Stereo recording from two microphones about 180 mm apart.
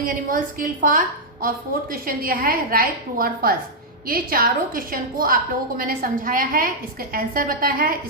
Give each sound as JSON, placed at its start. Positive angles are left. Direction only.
{"t": 0.0, "sound": "a woman's voice", "side_deg": -50}